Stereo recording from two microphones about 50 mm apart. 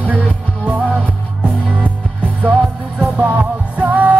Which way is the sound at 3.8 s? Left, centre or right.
Right.